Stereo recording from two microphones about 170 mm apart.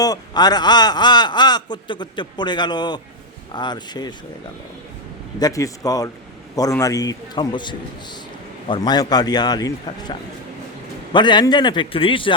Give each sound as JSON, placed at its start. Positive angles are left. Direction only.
{"t": 0.0, "sound": "speech", "side_deg": 25}
{"t": 5.4, "sound": "speech", "side_deg": 20}